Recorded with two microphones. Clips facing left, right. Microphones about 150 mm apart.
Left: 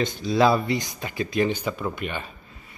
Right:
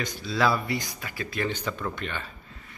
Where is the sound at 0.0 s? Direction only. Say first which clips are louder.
Left 6 dB; 20° left (ahead or behind).